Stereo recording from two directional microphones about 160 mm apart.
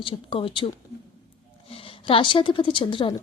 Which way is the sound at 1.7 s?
35° left (ahead or behind).